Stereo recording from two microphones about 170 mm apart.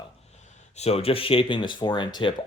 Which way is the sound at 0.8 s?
35° left (ahead or behind).